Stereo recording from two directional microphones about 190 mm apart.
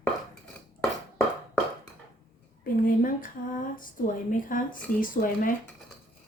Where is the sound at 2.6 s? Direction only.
45° left (ahead or behind).